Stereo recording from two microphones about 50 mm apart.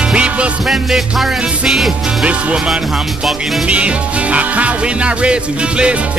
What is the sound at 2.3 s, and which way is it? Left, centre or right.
Speech, right.